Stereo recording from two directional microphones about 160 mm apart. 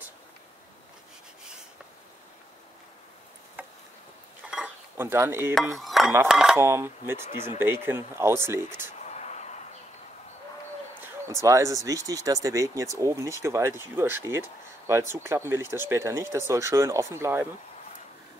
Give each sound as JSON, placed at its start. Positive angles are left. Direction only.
{"t": 3.6, "sound": "a sound", "side_deg": -10}
{"t": 4.5, "sound": "cutlery", "side_deg": -5}
{"t": 5.0, "sound": "speech", "side_deg": -15}
{"t": 5.8, "sound": "speech", "side_deg": 0}
{"t": 6.6, "sound": "speech", "side_deg": -15}
{"t": 9.0, "sound": "a sound", "side_deg": 45}
{"t": 11.0, "sound": "speech", "side_deg": -15}